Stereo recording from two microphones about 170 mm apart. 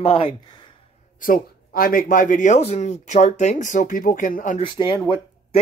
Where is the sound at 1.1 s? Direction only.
55° left (ahead or behind).